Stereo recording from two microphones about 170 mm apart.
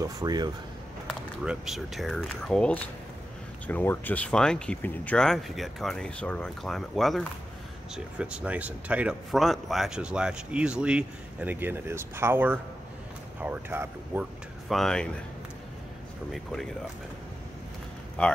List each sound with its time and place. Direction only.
0.0 s speech: 20° right (ahead or behind)
1.0 s speech: 5° right (ahead or behind)
14.7 s speech: 5° left (ahead or behind)
16.3 s speech: centre (ahead or behind)
18.2 s a man's voice: 10° left (ahead or behind)